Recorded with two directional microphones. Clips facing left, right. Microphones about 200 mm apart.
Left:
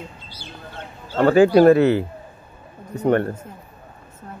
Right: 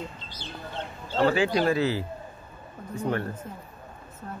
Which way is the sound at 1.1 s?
50° left (ahead or behind).